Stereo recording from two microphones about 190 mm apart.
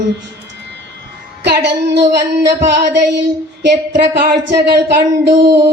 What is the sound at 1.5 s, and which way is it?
Speech, 65° right (ahead or behind).